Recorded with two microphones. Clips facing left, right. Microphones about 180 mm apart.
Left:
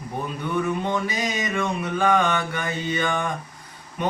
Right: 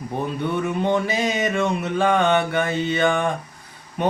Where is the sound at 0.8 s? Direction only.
25° right (ahead or behind).